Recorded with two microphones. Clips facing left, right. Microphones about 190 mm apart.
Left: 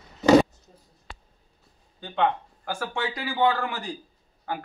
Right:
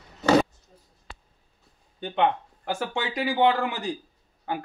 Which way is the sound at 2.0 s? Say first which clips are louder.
Right 1 dB; 20° right (ahead or behind).